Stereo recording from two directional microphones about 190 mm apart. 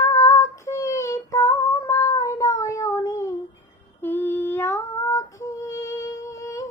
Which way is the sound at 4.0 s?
10° left (ahead or behind).